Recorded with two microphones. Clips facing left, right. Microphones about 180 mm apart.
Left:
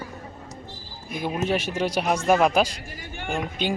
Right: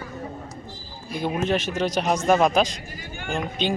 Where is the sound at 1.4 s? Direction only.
10° left (ahead or behind).